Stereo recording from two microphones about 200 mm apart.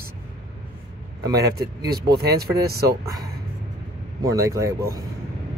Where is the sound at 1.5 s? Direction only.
50° right (ahead or behind).